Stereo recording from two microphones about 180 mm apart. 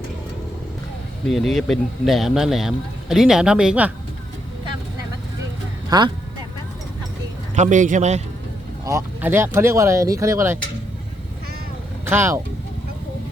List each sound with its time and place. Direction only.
1.3 s speech: centre (ahead or behind)
5.9 s speech: 20° right (ahead or behind)
7.5 s speech: 40° right (ahead or behind)
8.8 s speech: 15° right (ahead or behind)
12.0 s speech: 15° right (ahead or behind)